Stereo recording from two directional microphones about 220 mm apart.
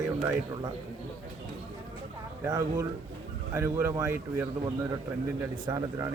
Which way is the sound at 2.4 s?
15° right (ahead or behind).